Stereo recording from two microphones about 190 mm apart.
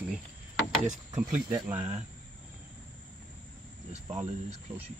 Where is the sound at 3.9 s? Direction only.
35° right (ahead or behind).